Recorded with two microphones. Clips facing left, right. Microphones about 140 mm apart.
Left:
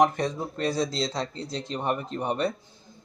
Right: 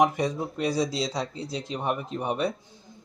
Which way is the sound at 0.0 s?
10° right (ahead or behind).